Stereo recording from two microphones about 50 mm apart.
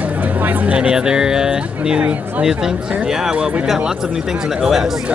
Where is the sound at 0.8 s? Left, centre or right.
Centre.